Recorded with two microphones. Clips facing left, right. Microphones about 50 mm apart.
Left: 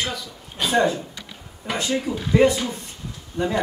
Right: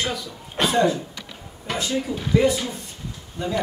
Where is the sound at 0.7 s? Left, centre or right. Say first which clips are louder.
Left 1 dB; left.